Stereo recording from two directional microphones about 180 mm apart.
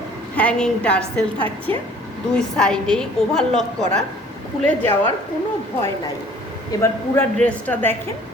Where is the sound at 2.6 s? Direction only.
5° left (ahead or behind).